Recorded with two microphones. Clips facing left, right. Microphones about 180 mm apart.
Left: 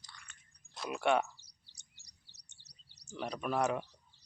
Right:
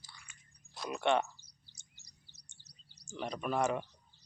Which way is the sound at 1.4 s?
70° left (ahead or behind).